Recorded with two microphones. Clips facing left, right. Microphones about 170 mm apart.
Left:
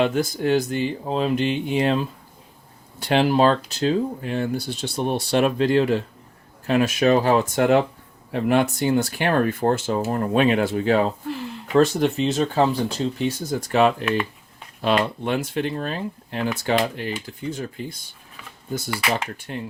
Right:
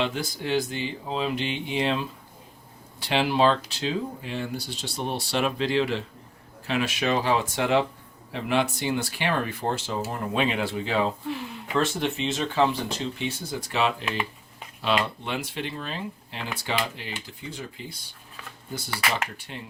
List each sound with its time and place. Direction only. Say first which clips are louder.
0.0 s speech: left 8 dB; 50° left (ahead or behind)
11.3 s speech: left 3 dB; centre (ahead or behind)
11.7 s speech: left 8 dB; 40° left (ahead or behind)